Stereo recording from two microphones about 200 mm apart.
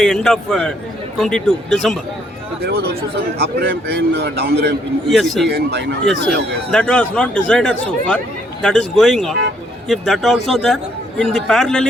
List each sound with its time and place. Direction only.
0.0 s speech: centre (ahead or behind)
2.6 s a man's voice: 55° right (ahead or behind)
5.1 s speech: centre (ahead or behind)
5.5 s speech: 55° right (ahead or behind)
6.7 s speech: 5° left (ahead or behind)